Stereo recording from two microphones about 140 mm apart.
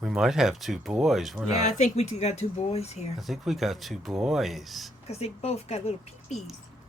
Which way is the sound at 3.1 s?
Centre (ahead or behind).